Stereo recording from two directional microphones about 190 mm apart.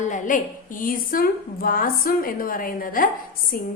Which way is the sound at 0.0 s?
40° left (ahead or behind).